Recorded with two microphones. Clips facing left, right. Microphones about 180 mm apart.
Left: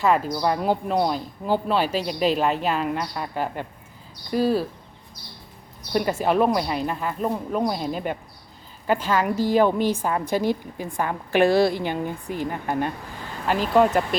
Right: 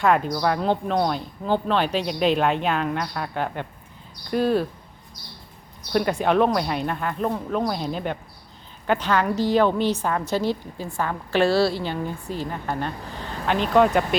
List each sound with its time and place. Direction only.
0.0 s speech: centre (ahead or behind)
5.9 s a woman's voice: 5° left (ahead or behind)